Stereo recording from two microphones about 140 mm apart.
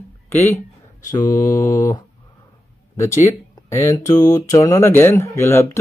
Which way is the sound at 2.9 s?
20° left (ahead or behind).